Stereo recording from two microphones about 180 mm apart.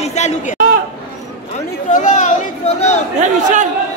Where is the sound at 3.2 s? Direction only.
45° right (ahead or behind).